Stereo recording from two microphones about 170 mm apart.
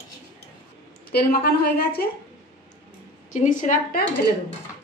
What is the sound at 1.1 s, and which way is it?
Speech, 65° left (ahead or behind).